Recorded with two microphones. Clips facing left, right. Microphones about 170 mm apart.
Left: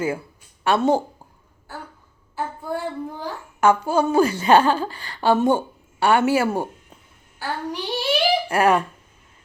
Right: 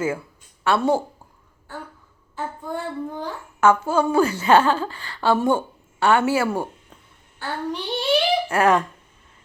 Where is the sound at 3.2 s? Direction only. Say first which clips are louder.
Even; 15° left (ahead or behind).